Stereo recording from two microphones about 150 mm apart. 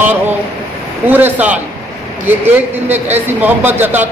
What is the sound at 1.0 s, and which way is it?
Speech, 10° right (ahead or behind).